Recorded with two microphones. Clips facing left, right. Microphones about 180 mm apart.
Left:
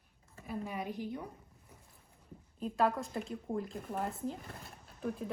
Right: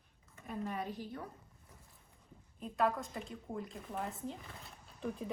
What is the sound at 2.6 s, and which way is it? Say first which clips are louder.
Speech: left 2 dB; 30° left (ahead or behind).